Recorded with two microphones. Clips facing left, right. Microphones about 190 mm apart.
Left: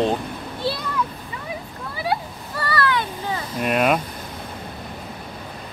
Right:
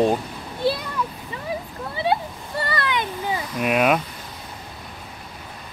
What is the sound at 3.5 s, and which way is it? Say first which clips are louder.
Speech: even; centre (ahead or behind).